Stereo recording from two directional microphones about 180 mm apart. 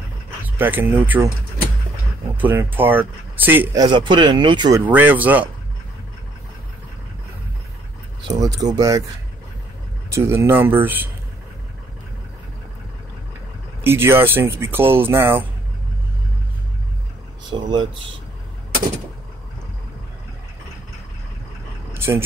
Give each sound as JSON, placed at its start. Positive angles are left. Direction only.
{"t": 0.6, "sound": "speech", "side_deg": -10}
{"t": 2.3, "sound": "speech", "side_deg": -10}
{"t": 3.8, "sound": "speech", "side_deg": -25}
{"t": 4.8, "sound": "speech", "side_deg": -10}
{"t": 8.4, "sound": "speech", "side_deg": -20}
{"t": 10.0, "sound": "speech", "side_deg": -15}
{"t": 13.8, "sound": "speech", "side_deg": -15}
{"t": 17.5, "sound": "speech", "side_deg": -25}
{"t": 21.9, "sound": "vehicle", "side_deg": -15}